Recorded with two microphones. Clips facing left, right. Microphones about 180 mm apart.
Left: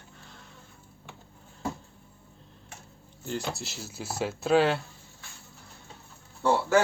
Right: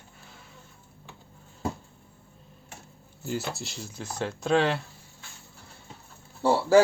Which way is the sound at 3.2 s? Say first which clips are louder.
Right 1 dB; 5° right (ahead or behind).